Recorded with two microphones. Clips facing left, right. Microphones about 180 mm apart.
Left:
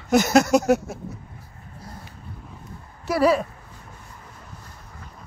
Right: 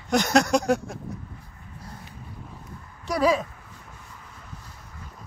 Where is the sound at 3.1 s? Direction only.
5° left (ahead or behind).